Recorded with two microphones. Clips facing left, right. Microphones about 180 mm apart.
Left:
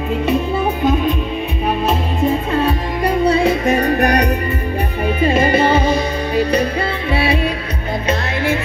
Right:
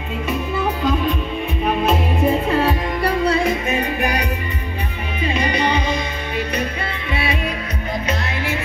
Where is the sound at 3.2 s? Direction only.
35° left (ahead or behind).